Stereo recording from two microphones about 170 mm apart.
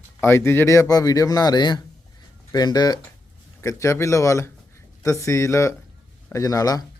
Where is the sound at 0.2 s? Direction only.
15° left (ahead or behind).